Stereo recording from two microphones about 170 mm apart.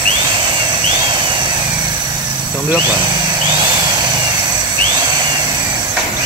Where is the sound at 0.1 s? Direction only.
30° right (ahead or behind).